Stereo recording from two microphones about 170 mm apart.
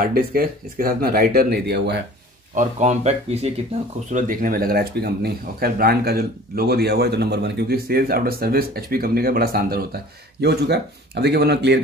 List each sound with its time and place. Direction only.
0.0 s speech: 60° right (ahead or behind)
2.5 s speech: 45° right (ahead or behind)
4.1 s speech: 50° right (ahead or behind); by 11.8 s 80° right